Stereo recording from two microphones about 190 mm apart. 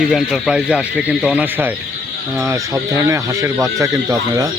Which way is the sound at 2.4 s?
15° right (ahead or behind).